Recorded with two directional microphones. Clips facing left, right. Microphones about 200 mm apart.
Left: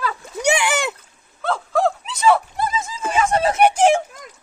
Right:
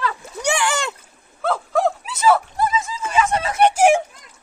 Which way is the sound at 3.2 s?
35° left (ahead or behind).